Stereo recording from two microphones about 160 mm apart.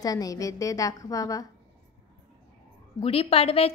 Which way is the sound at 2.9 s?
35° left (ahead or behind).